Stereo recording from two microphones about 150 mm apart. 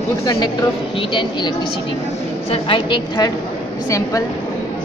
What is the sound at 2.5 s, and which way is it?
Speech, 35° left (ahead or behind).